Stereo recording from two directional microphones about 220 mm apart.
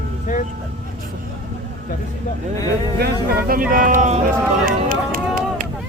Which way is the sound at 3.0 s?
45° right (ahead or behind).